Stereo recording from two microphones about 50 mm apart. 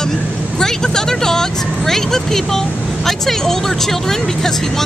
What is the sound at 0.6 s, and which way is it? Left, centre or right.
Speech, centre.